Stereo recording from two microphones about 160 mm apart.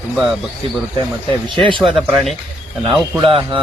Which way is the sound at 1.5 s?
30° right (ahead or behind).